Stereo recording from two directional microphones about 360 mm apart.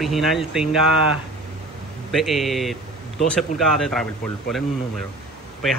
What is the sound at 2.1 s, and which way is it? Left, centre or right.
Speech, centre.